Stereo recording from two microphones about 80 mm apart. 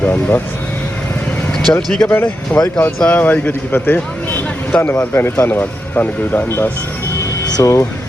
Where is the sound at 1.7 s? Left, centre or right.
Left.